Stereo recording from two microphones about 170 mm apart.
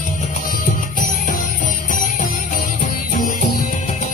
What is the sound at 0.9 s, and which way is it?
Music, 50° left (ahead or behind).